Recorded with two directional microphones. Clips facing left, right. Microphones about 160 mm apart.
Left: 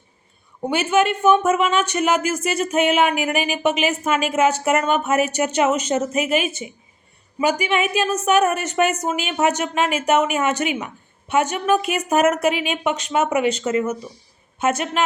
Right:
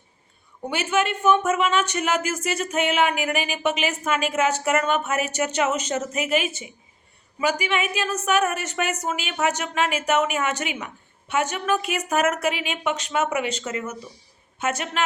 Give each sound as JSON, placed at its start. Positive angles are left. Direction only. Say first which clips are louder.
{"t": 0.7, "sound": "speech", "louder": "left 5 dB", "side_deg": 15}